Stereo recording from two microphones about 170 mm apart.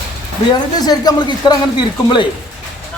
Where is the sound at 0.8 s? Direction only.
25° left (ahead or behind).